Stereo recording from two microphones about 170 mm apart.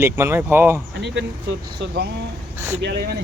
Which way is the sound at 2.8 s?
75° right (ahead or behind).